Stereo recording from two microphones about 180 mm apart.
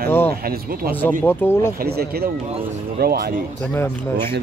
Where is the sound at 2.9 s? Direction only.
60° right (ahead or behind).